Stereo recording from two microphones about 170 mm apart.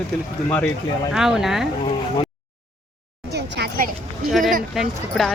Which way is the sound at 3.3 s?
75° right (ahead or behind).